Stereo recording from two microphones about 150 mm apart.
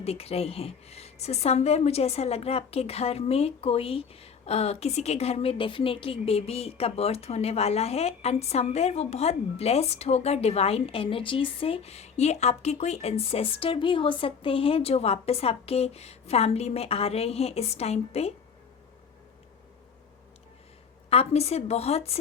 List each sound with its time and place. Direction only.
0.0 s a woman's voice: 40° left (ahead or behind)
21.1 s a woman's voice: 45° left (ahead or behind)